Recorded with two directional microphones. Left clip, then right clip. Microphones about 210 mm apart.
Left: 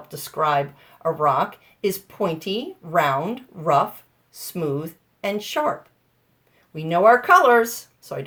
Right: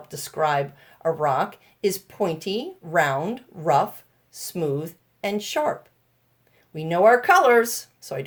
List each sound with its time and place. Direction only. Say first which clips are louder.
0.1 s speech: left 2 dB; 45° right (ahead or behind)
6.7 s speech: left 1 dB; 45° right (ahead or behind)